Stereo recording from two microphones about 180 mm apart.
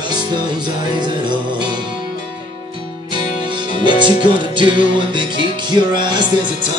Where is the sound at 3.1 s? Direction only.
25° right (ahead or behind).